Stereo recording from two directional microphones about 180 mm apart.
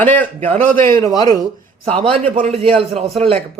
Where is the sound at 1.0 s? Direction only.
20° left (ahead or behind).